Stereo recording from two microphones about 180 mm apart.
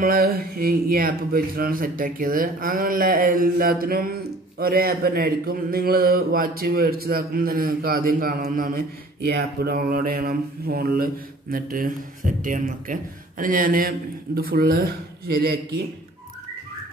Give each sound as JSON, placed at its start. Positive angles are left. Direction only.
{"t": 0.0, "sound": "a man's voice", "side_deg": -55}